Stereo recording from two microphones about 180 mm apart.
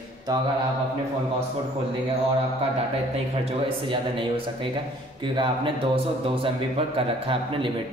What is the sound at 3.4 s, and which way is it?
A man's voice, 30° right (ahead or behind).